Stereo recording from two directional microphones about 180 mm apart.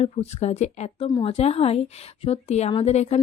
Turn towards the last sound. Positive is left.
turn(degrees=35)  # may be behind; listen again after turning